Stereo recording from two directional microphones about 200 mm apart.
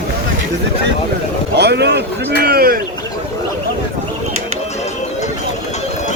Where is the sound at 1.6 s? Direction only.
55° right (ahead or behind).